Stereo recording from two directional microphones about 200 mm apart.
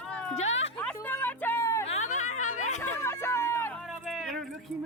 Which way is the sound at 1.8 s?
35° left (ahead or behind).